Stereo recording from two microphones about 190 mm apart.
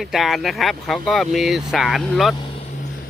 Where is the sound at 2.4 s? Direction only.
25° left (ahead or behind).